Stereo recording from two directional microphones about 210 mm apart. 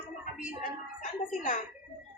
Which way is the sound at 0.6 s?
40° left (ahead or behind).